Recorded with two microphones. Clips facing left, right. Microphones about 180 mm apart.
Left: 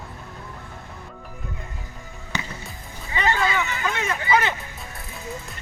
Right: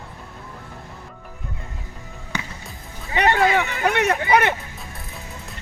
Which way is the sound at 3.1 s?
65° right (ahead or behind).